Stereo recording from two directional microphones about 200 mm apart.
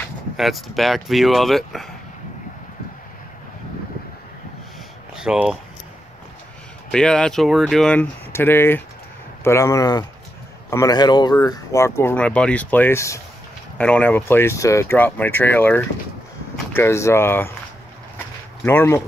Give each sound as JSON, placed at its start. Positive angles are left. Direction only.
{"t": 0.4, "sound": "speech", "side_deg": 0}
{"t": 5.1, "sound": "speech", "side_deg": -5}
{"t": 6.9, "sound": "speech", "side_deg": 5}
{"t": 18.1, "sound": "a sound", "side_deg": 10}